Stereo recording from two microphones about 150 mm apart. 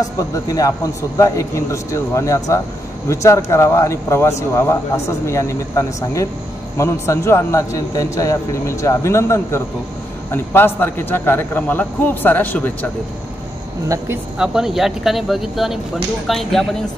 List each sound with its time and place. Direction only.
0.2 s a man's voice: 25° left (ahead or behind)
14.4 s speech: 5° right (ahead or behind)